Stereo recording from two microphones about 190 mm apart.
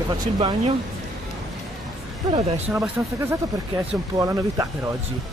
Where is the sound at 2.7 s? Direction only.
10° right (ahead or behind).